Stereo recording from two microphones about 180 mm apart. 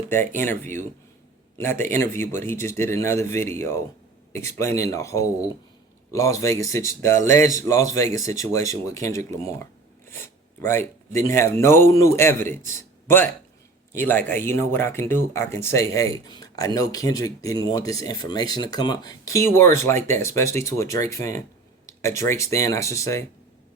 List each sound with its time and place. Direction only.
0.1 s a man's voice: 10° left (ahead or behind)
10.6 s a man's voice: 15° left (ahead or behind)